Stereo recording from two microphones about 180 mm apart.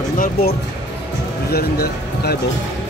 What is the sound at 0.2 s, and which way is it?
Speech, 55° left (ahead or behind).